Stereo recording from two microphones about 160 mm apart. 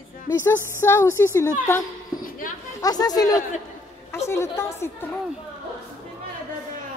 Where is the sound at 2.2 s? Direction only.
60° left (ahead or behind).